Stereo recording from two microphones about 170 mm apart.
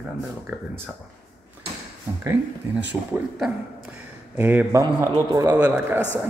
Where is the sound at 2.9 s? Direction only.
5° right (ahead or behind).